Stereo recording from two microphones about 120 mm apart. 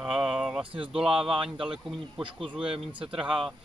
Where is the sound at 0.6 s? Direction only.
45° right (ahead or behind).